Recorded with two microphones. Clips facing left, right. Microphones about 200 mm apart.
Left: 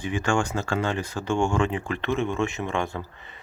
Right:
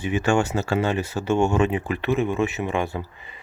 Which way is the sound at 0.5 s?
15° right (ahead or behind).